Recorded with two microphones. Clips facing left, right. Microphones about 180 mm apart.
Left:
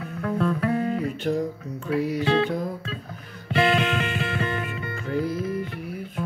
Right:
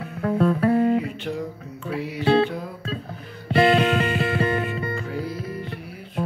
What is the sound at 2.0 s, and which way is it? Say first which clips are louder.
Speech: left 6 dB; 45° left (ahead or behind).